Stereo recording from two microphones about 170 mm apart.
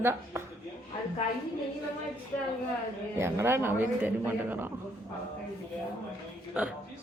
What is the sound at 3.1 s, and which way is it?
A woman's voice, 15° right (ahead or behind).